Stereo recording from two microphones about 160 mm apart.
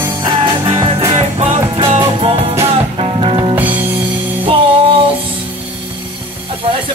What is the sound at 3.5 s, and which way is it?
Music, 10° right (ahead or behind).